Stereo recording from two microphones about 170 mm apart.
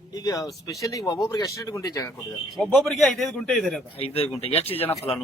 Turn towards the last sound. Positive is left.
turn(degrees=10)  # may be behind; listen again after turning